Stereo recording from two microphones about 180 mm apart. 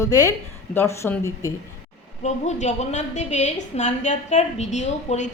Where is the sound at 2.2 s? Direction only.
40° left (ahead or behind).